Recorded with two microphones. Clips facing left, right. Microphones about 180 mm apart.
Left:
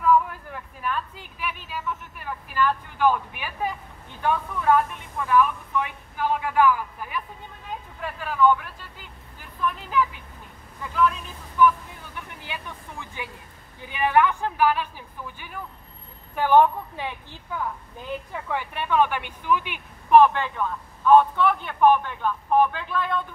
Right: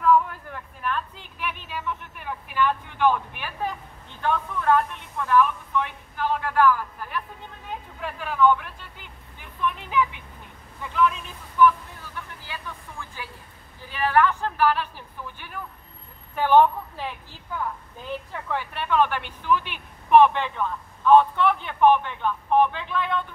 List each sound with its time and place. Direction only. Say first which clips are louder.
0.0 s a sound: even; 5° left (ahead or behind)
4.2 s a man's voice: left 1 dB; 10° left (ahead or behind)
12.3 s speech: left 1 dB; 20° left (ahead or behind)
18.3 s a man's voice: left 1 dB; 10° left (ahead or behind)